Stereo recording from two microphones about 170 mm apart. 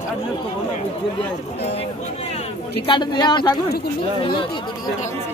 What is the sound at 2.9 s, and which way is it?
Speech, 25° left (ahead or behind).